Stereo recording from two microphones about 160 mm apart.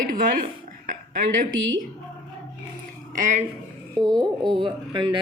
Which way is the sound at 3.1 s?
50° right (ahead or behind).